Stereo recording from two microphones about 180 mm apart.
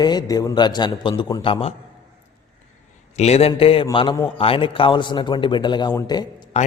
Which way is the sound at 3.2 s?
35° left (ahead or behind).